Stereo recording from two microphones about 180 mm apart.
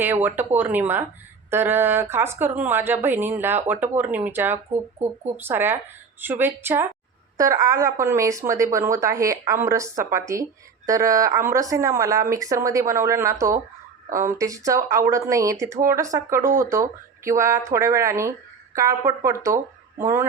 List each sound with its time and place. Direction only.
0.0 s a woman's voice: 10° right (ahead or behind)